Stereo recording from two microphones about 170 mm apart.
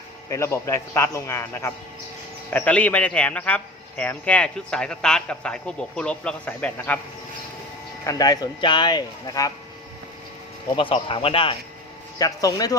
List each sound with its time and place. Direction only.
0.3 s a man's voice: 15° left (ahead or behind)
8.0 s speech: 20° left (ahead or behind)
10.8 s speech: 30° left (ahead or behind)
12.2 s speech: 20° left (ahead or behind)